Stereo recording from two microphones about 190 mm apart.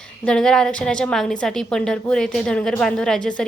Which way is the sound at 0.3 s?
5° left (ahead or behind).